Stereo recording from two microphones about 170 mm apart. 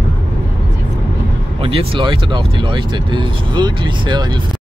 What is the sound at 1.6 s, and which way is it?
Speech, 30° right (ahead or behind).